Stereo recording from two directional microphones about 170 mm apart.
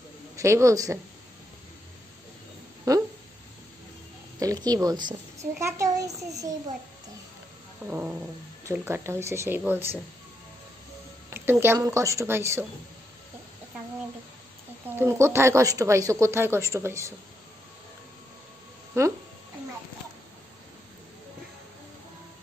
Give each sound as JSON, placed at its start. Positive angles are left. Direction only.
{"t": 0.4, "sound": "speech", "side_deg": -15}
{"t": 2.9, "sound": "a sound", "side_deg": -20}
{"t": 4.4, "sound": "a child's voice", "side_deg": -20}
{"t": 7.8, "sound": "speech", "side_deg": -10}
{"t": 11.2, "sound": "speech", "side_deg": -15}
{"t": 15.0, "sound": "speech", "side_deg": -15}
{"t": 18.9, "sound": "speech", "side_deg": -15}